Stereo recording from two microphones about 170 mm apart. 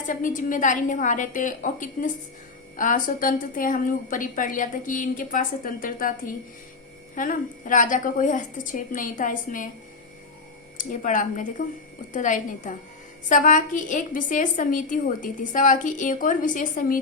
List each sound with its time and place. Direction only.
0.1 s a woman's voice: 50° left (ahead or behind)
7.2 s a woman's voice: 50° left (ahead or behind)
10.8 s a woman's voice: 50° left (ahead or behind)